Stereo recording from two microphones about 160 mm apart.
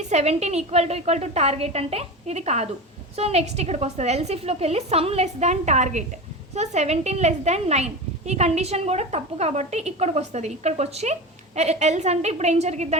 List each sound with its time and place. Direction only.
0.1 s a woman's voice: 45° right (ahead or behind)